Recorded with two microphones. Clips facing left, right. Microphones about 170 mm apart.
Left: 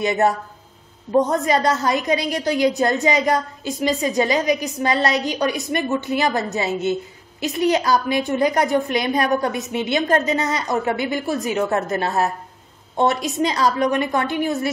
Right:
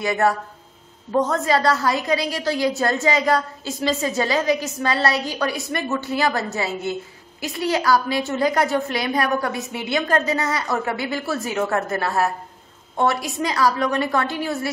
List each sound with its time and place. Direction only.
0.0 s a woman's voice: 20° left (ahead or behind)